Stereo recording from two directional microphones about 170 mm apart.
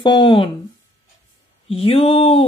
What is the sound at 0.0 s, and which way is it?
Speech, 30° left (ahead or behind).